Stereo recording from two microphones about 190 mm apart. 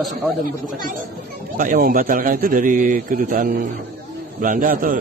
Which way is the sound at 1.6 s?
45° right (ahead or behind).